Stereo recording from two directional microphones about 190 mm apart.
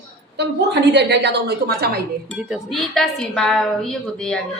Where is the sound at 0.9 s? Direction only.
65° right (ahead or behind).